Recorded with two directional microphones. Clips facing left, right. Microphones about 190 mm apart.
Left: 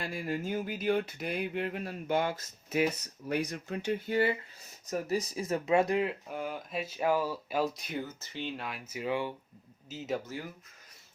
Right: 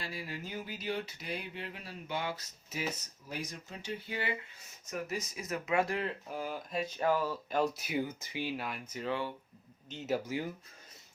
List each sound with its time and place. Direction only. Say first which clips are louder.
0.0 s a sound: left 7 dB; 50° left (ahead or behind)
3.2 s speech: left 9 dB; 65° left (ahead or behind); by 4.3 s 45° left (ahead or behind)
4.9 s speech: left 6 dB; 35° left (ahead or behind); by 6.1 s 15° left (ahead or behind)
6.2 s speech: left 2 dB; centre (ahead or behind)
9.9 s speech: even; centre (ahead or behind)